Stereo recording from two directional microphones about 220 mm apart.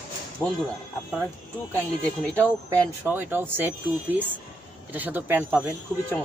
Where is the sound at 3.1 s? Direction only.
10° right (ahead or behind).